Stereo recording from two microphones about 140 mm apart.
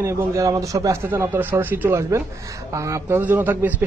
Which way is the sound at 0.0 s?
20° right (ahead or behind).